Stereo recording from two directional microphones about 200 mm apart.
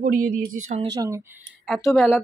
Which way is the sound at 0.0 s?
40° right (ahead or behind).